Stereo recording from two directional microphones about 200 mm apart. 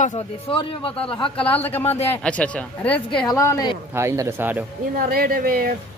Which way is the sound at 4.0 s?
15° right (ahead or behind).